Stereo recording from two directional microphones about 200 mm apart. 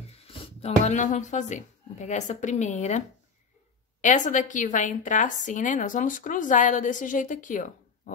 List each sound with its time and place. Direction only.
0.2 s a woman's voice: 30° left (ahead or behind)
4.0 s a woman's voice: 40° left (ahead or behind)